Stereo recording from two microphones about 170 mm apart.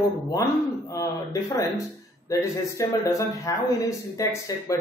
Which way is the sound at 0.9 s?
20° left (ahead or behind).